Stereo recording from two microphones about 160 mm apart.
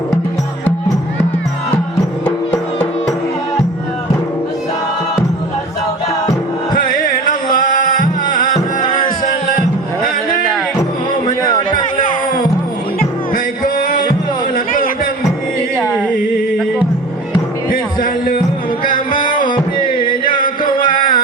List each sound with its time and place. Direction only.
6.7 s music: 60° left (ahead or behind)
11.9 s music: 60° left (ahead or behind)
14.5 s a sound: 60° left (ahead or behind)
15.8 s a sound: 10° left (ahead or behind)
17.7 s music: 60° left (ahead or behind)
19.9 s music: 30° left (ahead or behind)
20.2 s music: 60° left (ahead or behind)